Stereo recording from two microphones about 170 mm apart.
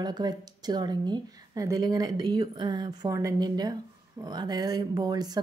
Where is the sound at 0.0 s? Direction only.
25° right (ahead or behind).